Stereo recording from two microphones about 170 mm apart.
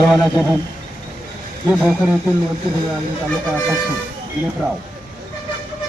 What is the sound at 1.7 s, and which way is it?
Speech, 10° right (ahead or behind).